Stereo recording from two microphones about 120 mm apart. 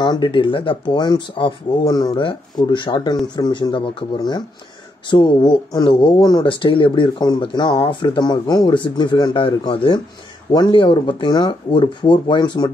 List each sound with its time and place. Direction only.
0.0 s speech: 40° left (ahead or behind)